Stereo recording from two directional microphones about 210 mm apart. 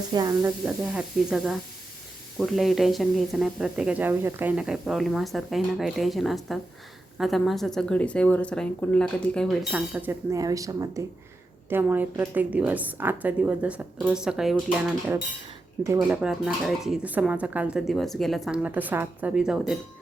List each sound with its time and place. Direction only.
0.1 s speech: 20° right (ahead or behind)
0.6 s a woman's voice: 5° right (ahead or behind)